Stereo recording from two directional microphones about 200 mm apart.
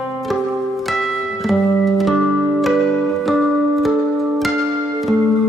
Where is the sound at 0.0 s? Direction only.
Centre (ahead or behind).